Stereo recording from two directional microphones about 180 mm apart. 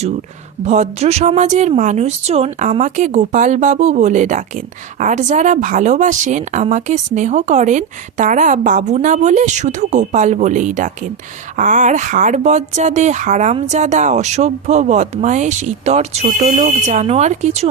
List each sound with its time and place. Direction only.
0.6 s speech: 40° right (ahead or behind)